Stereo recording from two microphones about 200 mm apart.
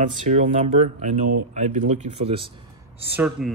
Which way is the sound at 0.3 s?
35° right (ahead or behind).